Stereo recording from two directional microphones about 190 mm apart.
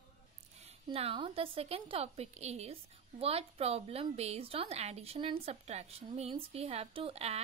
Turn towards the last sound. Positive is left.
turn(degrees=-30)  # may be behind; listen again after turning